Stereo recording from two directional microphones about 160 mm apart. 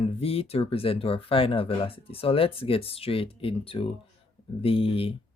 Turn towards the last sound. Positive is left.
turn(degrees=35)  # may be behind; listen again after turning